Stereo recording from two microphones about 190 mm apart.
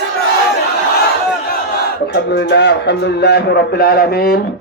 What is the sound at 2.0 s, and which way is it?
A man's voice, 60° left (ahead or behind).